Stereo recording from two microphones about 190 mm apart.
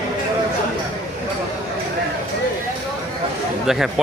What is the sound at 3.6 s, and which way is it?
Speech, centre (ahead or behind).